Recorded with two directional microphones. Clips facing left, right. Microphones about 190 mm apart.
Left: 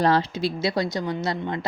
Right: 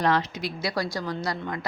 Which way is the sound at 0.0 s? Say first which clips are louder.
Left 4 dB; 30° left (ahead or behind).